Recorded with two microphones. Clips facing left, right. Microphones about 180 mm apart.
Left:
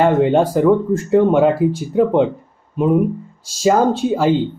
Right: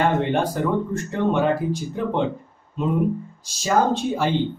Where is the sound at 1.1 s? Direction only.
90° left.